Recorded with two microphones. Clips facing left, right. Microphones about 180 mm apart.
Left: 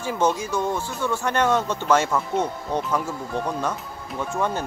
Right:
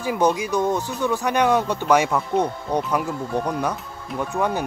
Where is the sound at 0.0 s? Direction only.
10° right (ahead or behind).